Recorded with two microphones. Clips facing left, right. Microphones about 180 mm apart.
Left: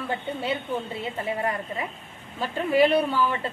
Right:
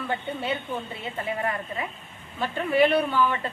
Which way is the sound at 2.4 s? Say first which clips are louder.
Left 1 dB; 35° left (ahead or behind).